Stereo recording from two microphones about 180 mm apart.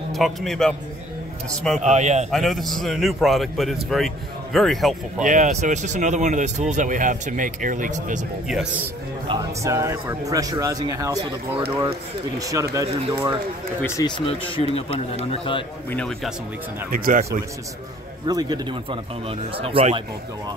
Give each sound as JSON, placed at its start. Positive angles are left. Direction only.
{"t": 0.1, "sound": "a man's voice", "side_deg": 0}
{"t": 1.8, "sound": "speech", "side_deg": -40}
{"t": 2.3, "sound": "a man's voice", "side_deg": 0}
{"t": 5.2, "sound": "speech", "side_deg": -45}
{"t": 8.5, "sound": "a man's voice", "side_deg": -5}
{"t": 9.6, "sound": "speech", "side_deg": -15}
{"t": 13.8, "sound": "speech", "side_deg": 20}
{"t": 15.9, "sound": "a man's voice", "side_deg": 5}
{"t": 16.9, "sound": "speech", "side_deg": -50}
{"t": 18.2, "sound": "a man's voice", "side_deg": -20}